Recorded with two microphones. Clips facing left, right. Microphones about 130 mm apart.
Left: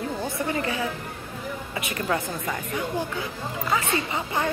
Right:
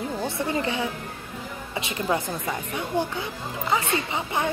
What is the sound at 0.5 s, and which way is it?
A woman's voice, 25° right (ahead or behind).